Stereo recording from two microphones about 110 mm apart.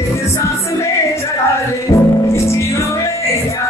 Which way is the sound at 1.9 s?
25° left (ahead or behind).